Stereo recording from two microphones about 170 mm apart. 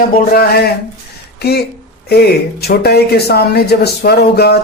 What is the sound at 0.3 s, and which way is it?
Speech, 65° left (ahead or behind).